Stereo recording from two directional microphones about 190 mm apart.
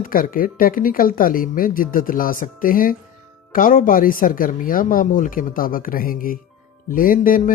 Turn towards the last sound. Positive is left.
turn(degrees=45)  # may be behind; listen again after turning